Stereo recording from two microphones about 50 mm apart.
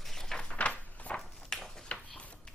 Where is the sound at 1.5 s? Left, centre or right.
Centre.